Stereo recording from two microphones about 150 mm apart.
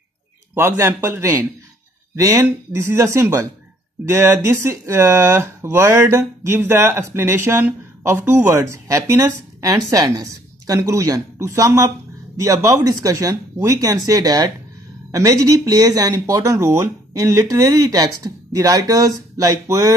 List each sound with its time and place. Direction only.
0.6 s speech: 15° right (ahead or behind)